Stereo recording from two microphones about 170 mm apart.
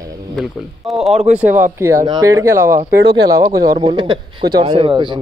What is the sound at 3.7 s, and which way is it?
A man's voice, 30° right (ahead or behind).